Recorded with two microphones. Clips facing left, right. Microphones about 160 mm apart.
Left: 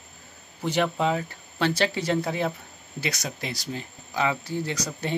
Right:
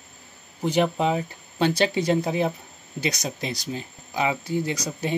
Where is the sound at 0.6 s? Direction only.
15° right (ahead or behind).